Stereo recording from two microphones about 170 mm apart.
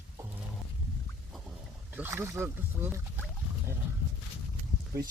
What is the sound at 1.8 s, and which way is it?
Speech, 10° right (ahead or behind).